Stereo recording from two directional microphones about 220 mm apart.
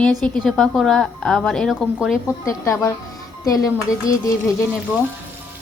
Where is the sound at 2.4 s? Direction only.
15° left (ahead or behind).